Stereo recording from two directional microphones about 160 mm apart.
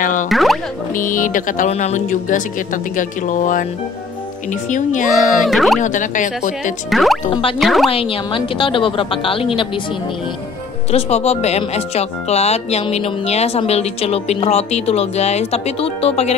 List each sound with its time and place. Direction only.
0.0 s music: 55° left (ahead or behind)
0.3 s music: centre (ahead or behind)
0.9 s speech: 55° left (ahead or behind)
4.6 s speech: 50° left (ahead or behind)
5.1 s speech: centre (ahead or behind)
5.8 s speech: 50° left (ahead or behind)
6.9 s speech: centre (ahead or behind)
7.2 s speech: 30° left (ahead or behind)
7.5 s speech: centre (ahead or behind)
7.9 s speech: 35° left (ahead or behind)
10.9 s speech: 40° left (ahead or behind)